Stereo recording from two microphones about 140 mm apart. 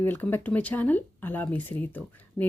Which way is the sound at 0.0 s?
15° left (ahead or behind).